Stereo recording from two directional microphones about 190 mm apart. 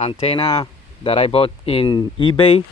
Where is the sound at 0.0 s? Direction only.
30° left (ahead or behind).